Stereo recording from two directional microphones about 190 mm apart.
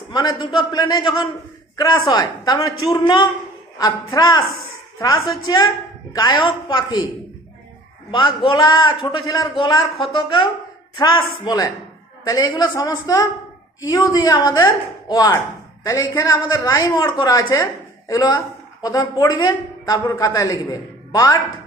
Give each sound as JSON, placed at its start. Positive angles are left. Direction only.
{"t": 0.1, "sound": "speech", "side_deg": 20}
{"t": 8.1, "sound": "speech", "side_deg": 25}